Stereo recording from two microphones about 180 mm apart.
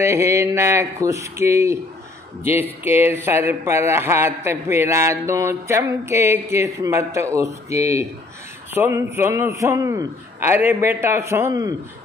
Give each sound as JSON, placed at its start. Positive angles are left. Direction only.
{"t": 0.0, "sound": "speech", "side_deg": -15}